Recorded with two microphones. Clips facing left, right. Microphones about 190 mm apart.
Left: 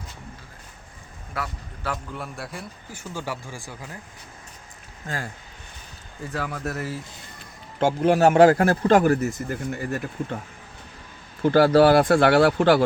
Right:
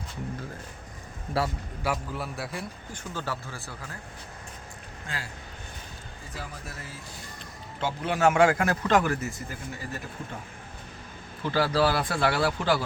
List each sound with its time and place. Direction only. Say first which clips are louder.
1.8 s a man's voice: right 1 dB; 5° right (ahead or behind); by 3.9 s 15° left (ahead or behind)
5.0 s speech: left 7 dB; 45° left (ahead or behind)
6.3 s speech: left 11 dB; 70° left (ahead or behind)
7.8 s a man's voice: left 8 dB; 45° left (ahead or behind)
9.5 s speech: left 9 dB; 55° left (ahead or behind)
10.2 s speech: left 9 dB; 70° left (ahead or behind)
11.4 s speech: left 9 dB; 55° left (ahead or behind)